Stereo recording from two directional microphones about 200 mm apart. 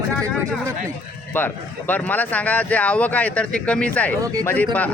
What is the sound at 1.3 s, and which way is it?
Speech, 10° left (ahead or behind).